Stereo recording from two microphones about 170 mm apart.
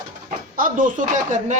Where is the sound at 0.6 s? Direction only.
50° right (ahead or behind).